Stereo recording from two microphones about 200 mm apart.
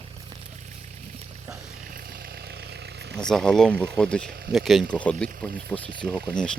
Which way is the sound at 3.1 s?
5° left (ahead or behind).